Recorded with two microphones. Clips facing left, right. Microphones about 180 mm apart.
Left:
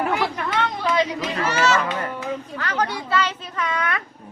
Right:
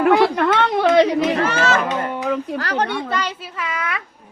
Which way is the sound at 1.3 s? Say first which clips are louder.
Right 3 dB; 55° right (ahead or behind).